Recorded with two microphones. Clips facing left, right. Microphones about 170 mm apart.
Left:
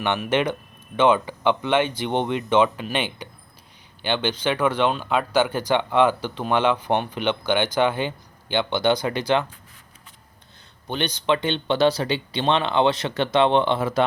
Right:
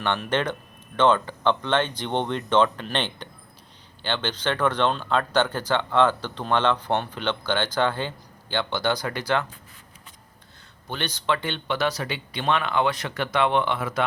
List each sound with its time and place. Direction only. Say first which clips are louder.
0.0 s speech: left 3 dB; 15° left (ahead or behind)
10.8 s speech: left 4 dB; 20° left (ahead or behind)